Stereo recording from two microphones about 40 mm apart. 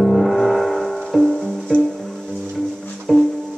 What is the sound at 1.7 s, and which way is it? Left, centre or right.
Music, right.